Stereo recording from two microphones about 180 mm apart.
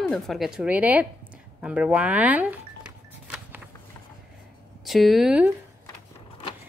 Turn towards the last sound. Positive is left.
turn(degrees=-5)  # may be behind; listen again after turning